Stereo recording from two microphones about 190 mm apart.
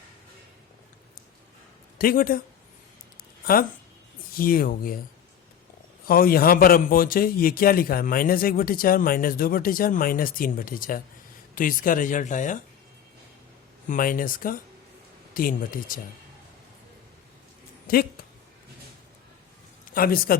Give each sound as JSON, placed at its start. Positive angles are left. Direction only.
{"t": 2.0, "sound": "a man's voice", "side_deg": 50}
{"t": 3.4, "sound": "a man's voice", "side_deg": 50}
{"t": 6.1, "sound": "a man's voice", "side_deg": 50}
{"t": 13.8, "sound": "a man's voice", "side_deg": 45}
{"t": 17.9, "sound": "a man's voice", "side_deg": 50}
{"t": 19.9, "sound": "a man's voice", "side_deg": 50}